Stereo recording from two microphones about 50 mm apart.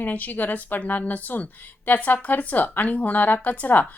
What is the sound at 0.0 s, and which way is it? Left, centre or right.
A woman's voice, left.